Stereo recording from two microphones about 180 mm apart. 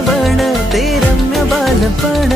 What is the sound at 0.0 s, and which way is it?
Music, centre (ahead or behind).